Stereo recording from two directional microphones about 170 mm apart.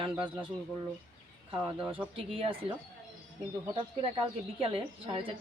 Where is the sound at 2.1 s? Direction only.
30° right (ahead or behind).